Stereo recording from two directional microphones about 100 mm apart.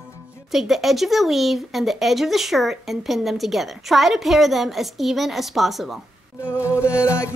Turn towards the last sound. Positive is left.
turn(degrees=25)  # may be behind; listen again after turning